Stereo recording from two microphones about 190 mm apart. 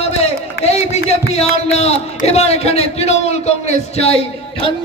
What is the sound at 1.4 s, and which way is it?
A man's voice, 35° left (ahead or behind).